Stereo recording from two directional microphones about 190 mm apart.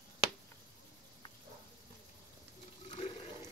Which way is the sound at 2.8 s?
30° left (ahead or behind).